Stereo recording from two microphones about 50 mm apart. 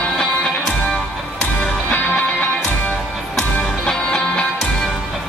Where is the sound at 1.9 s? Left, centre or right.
Left.